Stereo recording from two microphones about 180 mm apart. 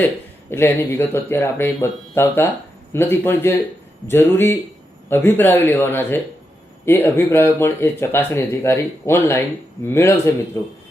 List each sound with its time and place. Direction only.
0.5 s speech: 10° left (ahead or behind)